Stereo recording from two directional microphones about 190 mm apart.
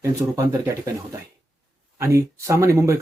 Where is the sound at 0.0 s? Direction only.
15° right (ahead or behind).